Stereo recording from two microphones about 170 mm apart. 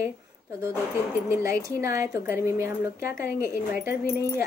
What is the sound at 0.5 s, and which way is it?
A woman's voice, 15° right (ahead or behind).